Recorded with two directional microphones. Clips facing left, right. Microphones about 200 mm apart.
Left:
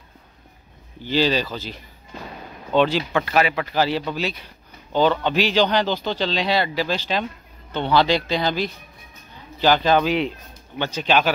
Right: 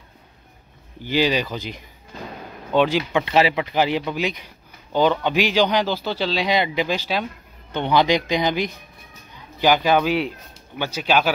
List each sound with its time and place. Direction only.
1.0 s speech: 15° right (ahead or behind)